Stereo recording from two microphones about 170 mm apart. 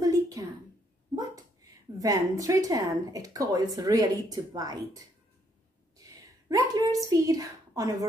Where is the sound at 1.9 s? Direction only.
20° right (ahead or behind).